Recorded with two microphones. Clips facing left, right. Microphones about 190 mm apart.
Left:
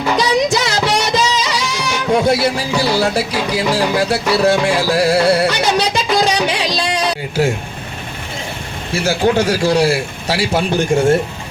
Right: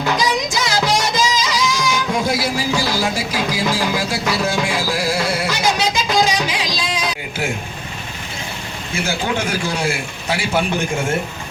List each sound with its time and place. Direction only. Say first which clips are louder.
0.2 s music: left 5 dB; 65° left (ahead or behind)
8.9 s a man's voice: left 7 dB; 40° left (ahead or behind)